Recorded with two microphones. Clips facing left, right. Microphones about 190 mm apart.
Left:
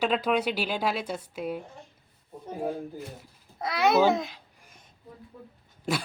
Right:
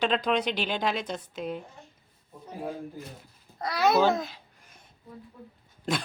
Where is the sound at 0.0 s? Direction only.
5° left (ahead or behind).